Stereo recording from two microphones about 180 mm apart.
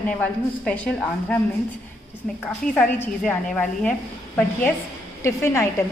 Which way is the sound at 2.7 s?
5° left (ahead or behind).